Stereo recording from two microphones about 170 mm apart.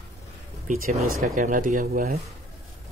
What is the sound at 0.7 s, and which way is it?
Speech, 40° right (ahead or behind).